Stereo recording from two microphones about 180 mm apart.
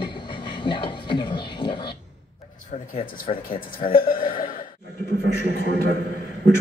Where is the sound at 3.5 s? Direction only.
50° left (ahead or behind).